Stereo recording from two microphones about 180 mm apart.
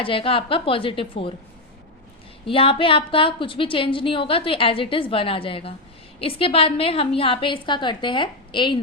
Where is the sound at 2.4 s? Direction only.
30° left (ahead or behind).